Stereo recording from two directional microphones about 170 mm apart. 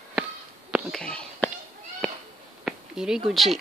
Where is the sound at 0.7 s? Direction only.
5° left (ahead or behind).